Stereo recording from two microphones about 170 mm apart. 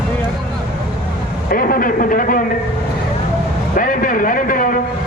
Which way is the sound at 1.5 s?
55° left (ahead or behind).